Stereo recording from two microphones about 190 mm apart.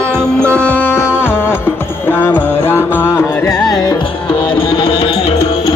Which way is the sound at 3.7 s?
25° left (ahead or behind).